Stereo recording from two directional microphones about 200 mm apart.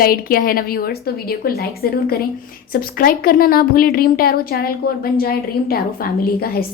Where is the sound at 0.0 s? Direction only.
45° left (ahead or behind).